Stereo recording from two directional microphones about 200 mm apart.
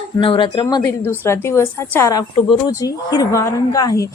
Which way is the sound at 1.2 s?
10° left (ahead or behind).